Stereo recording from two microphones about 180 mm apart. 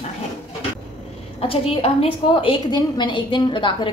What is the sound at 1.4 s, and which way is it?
A woman's voice, 30° left (ahead or behind).